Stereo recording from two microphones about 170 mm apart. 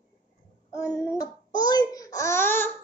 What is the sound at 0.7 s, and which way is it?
A child's voice, 20° left (ahead or behind).